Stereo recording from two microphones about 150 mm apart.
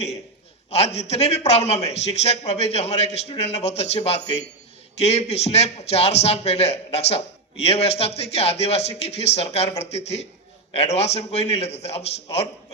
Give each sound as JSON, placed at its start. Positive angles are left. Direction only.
{"t": 0.7, "sound": "a man's voice", "side_deg": 45}